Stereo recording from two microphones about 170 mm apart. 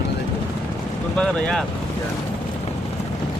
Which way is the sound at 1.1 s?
5° left (ahead or behind).